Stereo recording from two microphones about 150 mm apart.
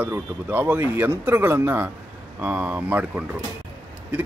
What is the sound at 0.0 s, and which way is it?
Speech, 15° right (ahead or behind).